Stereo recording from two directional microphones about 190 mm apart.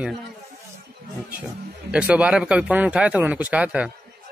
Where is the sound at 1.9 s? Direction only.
5° right (ahead or behind).